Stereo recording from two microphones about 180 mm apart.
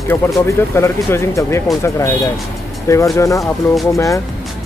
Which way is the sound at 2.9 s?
15° left (ahead or behind).